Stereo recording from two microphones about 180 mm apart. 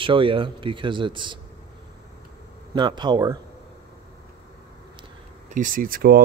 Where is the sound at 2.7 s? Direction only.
25° right (ahead or behind).